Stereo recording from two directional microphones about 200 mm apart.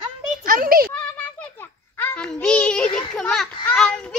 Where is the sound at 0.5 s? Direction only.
45° right (ahead or behind).